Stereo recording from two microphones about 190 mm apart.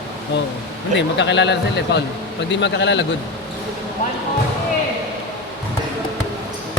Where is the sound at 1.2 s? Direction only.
65° left (ahead or behind).